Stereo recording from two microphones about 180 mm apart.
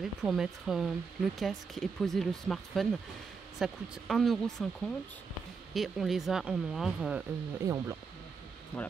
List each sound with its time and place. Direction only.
0.0 s speech: centre (ahead or behind)
7.6 s speech: 15° right (ahead or behind)
8.7 s speech: 10° left (ahead or behind)